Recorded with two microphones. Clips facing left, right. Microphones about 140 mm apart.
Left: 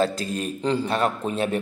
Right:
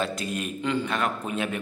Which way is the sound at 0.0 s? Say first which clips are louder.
Left 5 dB; 35° left (ahead or behind).